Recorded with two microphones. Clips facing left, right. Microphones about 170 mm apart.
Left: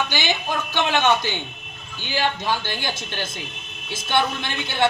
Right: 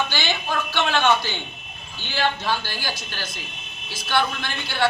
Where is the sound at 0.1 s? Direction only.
15° left (ahead or behind).